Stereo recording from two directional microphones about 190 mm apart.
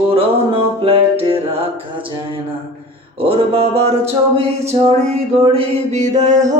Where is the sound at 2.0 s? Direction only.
30° right (ahead or behind).